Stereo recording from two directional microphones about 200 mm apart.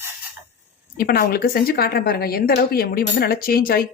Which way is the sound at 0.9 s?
50° left (ahead or behind).